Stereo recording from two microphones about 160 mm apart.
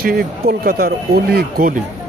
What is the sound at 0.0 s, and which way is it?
Speech, 70° right (ahead or behind).